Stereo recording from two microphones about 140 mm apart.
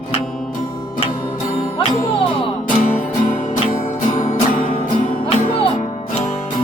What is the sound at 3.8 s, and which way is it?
Music, 65° left (ahead or behind).